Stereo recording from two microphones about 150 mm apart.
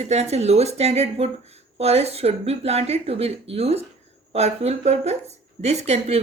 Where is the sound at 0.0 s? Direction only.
45° right (ahead or behind).